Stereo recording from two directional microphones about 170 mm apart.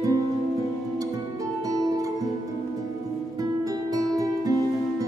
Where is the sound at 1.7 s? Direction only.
20° right (ahead or behind).